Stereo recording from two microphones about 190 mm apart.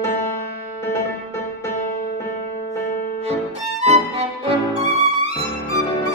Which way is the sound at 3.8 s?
35° right (ahead or behind).